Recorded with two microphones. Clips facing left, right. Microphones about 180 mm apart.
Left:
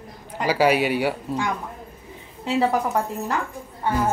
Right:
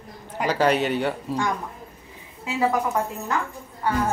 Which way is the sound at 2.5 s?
30° left (ahead or behind).